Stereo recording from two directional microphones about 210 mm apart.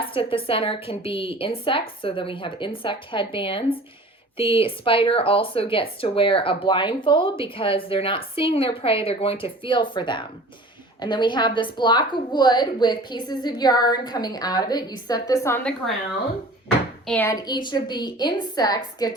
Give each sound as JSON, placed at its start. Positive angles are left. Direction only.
{"t": 0.1, "sound": "a woman's voice", "side_deg": 25}
{"t": 17.1, "sound": "a woman's voice", "side_deg": 10}